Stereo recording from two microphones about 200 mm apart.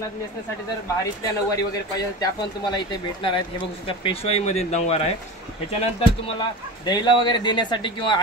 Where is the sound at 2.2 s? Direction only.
20° left (ahead or behind).